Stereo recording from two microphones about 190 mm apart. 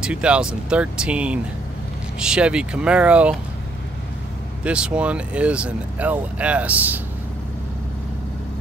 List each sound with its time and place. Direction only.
0.0 s speech: 5° right (ahead or behind)
4.6 s speech: 5° right (ahead or behind)